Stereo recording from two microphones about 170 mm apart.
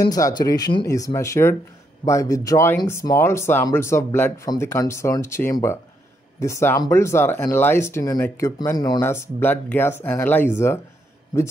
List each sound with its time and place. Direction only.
0.1 s speech: 25° left (ahead or behind)